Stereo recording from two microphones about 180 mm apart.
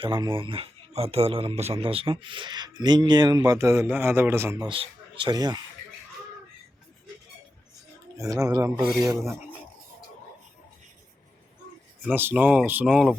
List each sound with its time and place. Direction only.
0.0 s speech: 30° right (ahead or behind)
8.2 s speech: 15° right (ahead or behind)
12.0 s speech: 10° right (ahead or behind)